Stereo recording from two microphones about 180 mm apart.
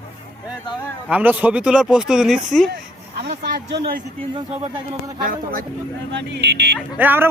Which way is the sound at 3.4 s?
70° right (ahead or behind).